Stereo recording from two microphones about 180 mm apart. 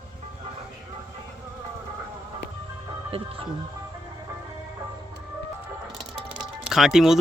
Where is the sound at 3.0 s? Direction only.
30° right (ahead or behind).